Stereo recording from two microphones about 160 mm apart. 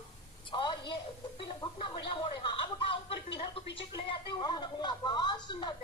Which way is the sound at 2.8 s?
35° left (ahead or behind).